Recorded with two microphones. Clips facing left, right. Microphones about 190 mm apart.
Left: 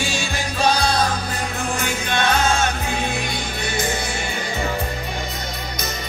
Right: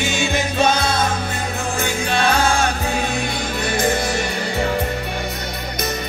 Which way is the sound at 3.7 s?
55° right (ahead or behind).